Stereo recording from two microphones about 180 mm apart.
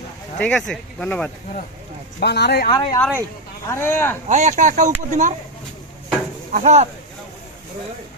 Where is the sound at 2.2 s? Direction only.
65° left (ahead or behind).